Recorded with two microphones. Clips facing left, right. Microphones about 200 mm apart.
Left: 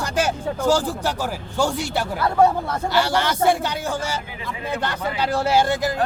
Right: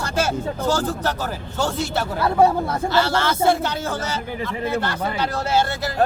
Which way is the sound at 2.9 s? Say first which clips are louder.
Even; 15° left (ahead or behind).